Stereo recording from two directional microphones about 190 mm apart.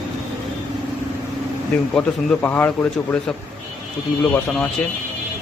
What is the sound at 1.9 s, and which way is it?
Speech, 10° left (ahead or behind).